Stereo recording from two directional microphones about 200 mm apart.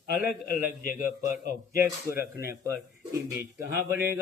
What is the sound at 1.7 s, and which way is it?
Speech, 10° right (ahead or behind).